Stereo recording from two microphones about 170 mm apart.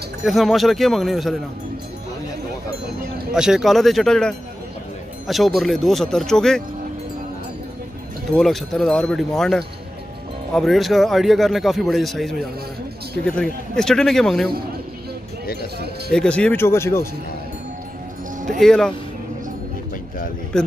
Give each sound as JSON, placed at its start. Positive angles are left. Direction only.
{"t": 0.2, "sound": "a man's voice", "side_deg": 0}
{"t": 3.3, "sound": "a man's voice", "side_deg": -5}
{"t": 8.3, "sound": "a man's voice", "side_deg": 0}
{"t": 16.1, "sound": "speech", "side_deg": 5}
{"t": 18.6, "sound": "a man's voice", "side_deg": 0}
{"t": 20.5, "sound": "a man's voice", "side_deg": 5}